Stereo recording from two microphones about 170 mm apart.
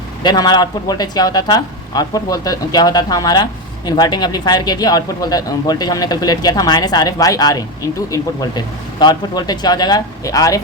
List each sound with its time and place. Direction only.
0.2 s speech: 25° left (ahead or behind)